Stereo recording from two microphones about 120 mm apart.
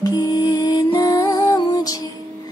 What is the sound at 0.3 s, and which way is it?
Music, 35° left (ahead or behind).